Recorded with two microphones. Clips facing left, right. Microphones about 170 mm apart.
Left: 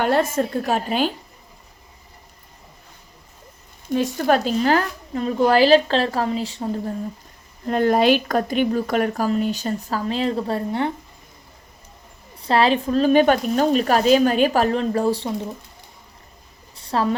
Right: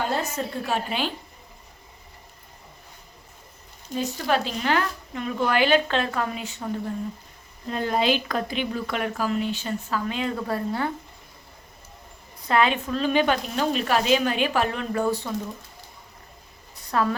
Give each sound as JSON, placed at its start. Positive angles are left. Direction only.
{"t": 0.0, "sound": "a woman's voice", "side_deg": 65}
{"t": 3.9, "sound": "speech", "side_deg": 65}
{"t": 4.3, "sound": "a woman's voice", "side_deg": 40}
{"t": 7.7, "sound": "a woman's voice", "side_deg": 55}
{"t": 12.4, "sound": "a woman's voice", "side_deg": 30}
{"t": 16.7, "sound": "a sound", "side_deg": 30}